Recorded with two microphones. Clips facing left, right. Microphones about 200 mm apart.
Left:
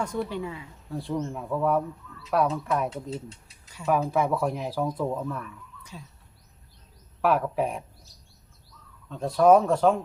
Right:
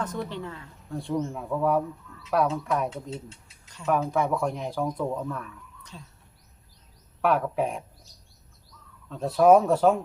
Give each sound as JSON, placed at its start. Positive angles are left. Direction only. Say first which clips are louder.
{"t": 0.0, "sound": "speech", "louder": "left 2 dB", "side_deg": 10}
{"t": 7.2, "sound": "speech", "louder": "even", "side_deg": 0}
{"t": 9.0, "sound": "speech", "louder": "even", "side_deg": 0}